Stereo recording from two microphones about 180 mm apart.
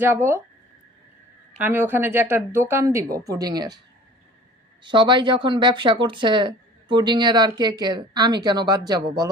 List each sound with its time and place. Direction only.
0.0 s a woman's voice: 10° right (ahead or behind)
1.5 s a woman's voice: 10° right (ahead or behind)
4.8 s speech: 25° right (ahead or behind)